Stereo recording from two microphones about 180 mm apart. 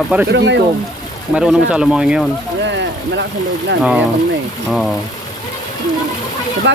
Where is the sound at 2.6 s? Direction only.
75° right (ahead or behind).